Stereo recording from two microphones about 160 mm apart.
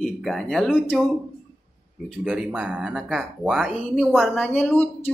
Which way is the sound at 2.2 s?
5° right (ahead or behind).